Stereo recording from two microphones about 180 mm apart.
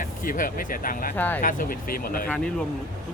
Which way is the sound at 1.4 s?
50° left (ahead or behind).